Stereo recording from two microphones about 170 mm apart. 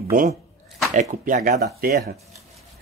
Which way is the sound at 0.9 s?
50° right (ahead or behind).